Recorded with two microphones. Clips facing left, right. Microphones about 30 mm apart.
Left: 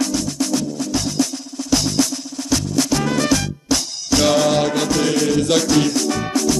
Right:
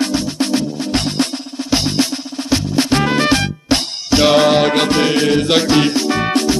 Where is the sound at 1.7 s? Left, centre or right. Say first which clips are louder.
Right 2 dB; right.